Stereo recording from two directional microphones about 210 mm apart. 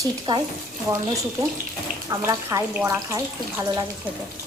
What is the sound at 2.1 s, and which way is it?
Speech, 15° right (ahead or behind).